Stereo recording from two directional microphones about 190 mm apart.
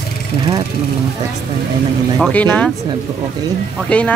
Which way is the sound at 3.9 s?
5° left (ahead or behind).